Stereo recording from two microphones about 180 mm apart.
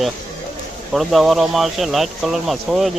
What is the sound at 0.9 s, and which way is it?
Speech, centre (ahead or behind).